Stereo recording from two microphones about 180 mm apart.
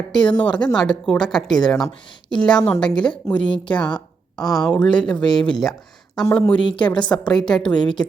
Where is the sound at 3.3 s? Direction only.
30° left (ahead or behind).